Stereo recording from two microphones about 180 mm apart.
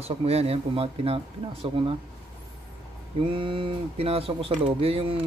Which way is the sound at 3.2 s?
30° right (ahead or behind).